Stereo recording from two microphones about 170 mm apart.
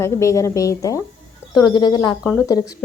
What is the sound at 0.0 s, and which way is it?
Speech, 15° left (ahead or behind).